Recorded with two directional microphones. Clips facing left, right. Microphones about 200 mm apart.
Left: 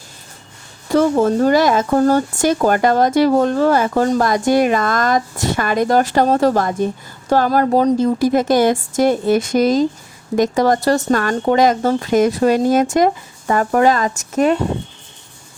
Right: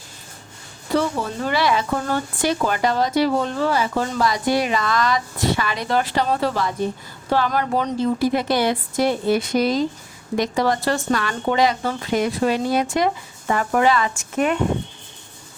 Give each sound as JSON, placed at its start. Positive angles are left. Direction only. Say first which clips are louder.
{"t": 0.9, "sound": "speech", "louder": "left 8 dB", "side_deg": 45}